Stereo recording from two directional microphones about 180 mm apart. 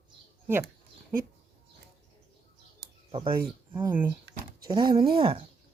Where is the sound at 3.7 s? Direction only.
10° right (ahead or behind).